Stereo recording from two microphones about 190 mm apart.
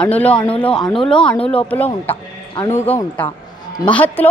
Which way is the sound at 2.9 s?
10° left (ahead or behind).